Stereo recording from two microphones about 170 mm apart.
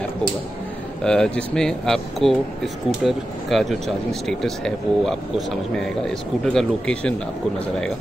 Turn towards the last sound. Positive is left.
turn(degrees=5)  # may be behind; listen again after turning